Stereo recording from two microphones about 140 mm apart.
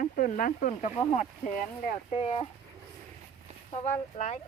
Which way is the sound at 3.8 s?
60° left (ahead or behind).